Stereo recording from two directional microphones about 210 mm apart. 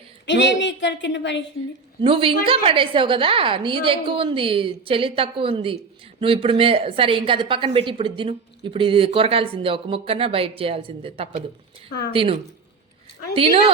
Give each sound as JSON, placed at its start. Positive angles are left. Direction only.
{"t": 0.3, "sound": "a woman's voice", "side_deg": 55}
{"t": 2.0, "sound": "a woman's voice", "side_deg": -25}